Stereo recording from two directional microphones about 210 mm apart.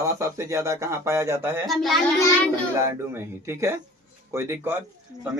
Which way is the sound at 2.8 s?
10° right (ahead or behind).